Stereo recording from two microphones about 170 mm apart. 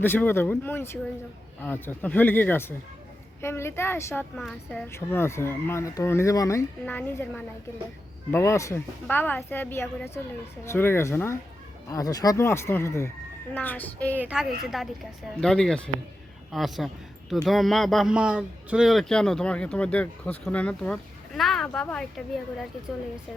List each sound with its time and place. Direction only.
0.0 s speech: 10° left (ahead or behind)
4.4 s a man's voice: centre (ahead or behind)
4.9 s speech: 15° left (ahead or behind)
14.2 s a woman's voice: 5° right (ahead or behind)